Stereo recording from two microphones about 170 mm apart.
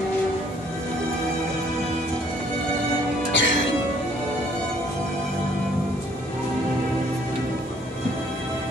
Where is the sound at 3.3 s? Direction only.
90° left.